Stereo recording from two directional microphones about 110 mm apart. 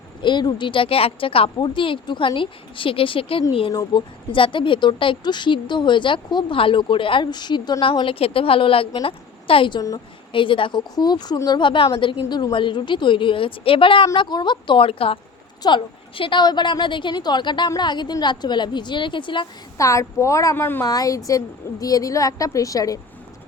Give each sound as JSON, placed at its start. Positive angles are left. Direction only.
{"t": 0.2, "sound": "speech", "side_deg": 45}
{"t": 3.7, "sound": "a woman's voice", "side_deg": 35}
{"t": 4.3, "sound": "speech", "side_deg": 50}
{"t": 7.9, "sound": "a woman's voice", "side_deg": 55}
{"t": 19.7, "sound": "a woman's voice", "side_deg": 30}